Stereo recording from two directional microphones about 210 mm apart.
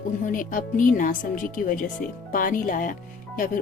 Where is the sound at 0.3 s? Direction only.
40° left (ahead or behind).